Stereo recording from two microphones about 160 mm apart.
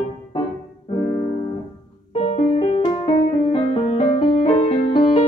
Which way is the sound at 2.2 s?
40° left (ahead or behind).